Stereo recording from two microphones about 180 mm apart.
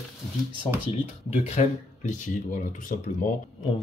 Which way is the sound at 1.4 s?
40° left (ahead or behind).